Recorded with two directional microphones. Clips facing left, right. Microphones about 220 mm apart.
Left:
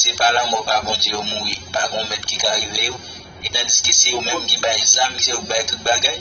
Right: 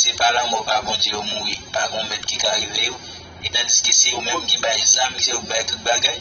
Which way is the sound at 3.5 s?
45° left (ahead or behind).